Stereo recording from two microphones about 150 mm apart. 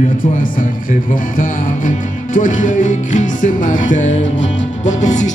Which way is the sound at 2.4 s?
55° left (ahead or behind).